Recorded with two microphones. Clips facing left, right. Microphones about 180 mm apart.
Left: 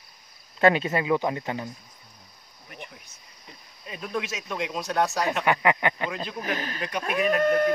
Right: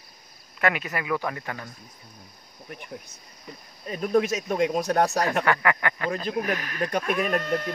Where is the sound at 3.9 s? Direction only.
45° right (ahead or behind).